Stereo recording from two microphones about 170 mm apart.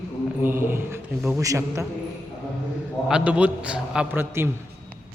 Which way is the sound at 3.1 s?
5° right (ahead or behind).